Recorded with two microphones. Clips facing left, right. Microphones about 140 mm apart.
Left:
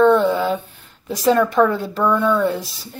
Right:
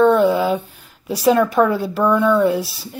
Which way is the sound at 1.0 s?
5° right (ahead or behind).